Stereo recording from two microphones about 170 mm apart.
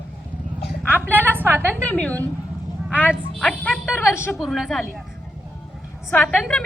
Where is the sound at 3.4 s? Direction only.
10° left (ahead or behind).